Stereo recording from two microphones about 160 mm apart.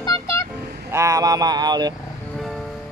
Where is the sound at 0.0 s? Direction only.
20° left (ahead or behind).